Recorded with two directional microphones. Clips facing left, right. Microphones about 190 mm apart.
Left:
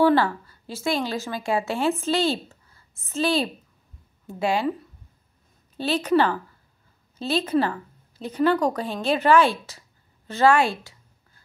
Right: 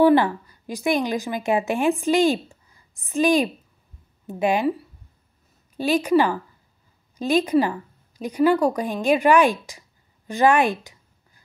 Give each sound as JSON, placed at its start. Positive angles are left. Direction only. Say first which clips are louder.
{"t": 0.0, "sound": "a woman's voice", "louder": "right 3 dB", "side_deg": -15}
{"t": 5.8, "sound": "a woman's voice", "louder": "right 2 dB", "side_deg": -10}